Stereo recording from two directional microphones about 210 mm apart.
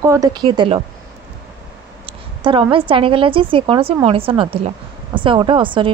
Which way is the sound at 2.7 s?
25° right (ahead or behind).